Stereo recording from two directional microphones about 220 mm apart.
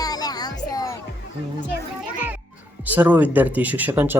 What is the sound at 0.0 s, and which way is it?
Music, 15° left (ahead or behind).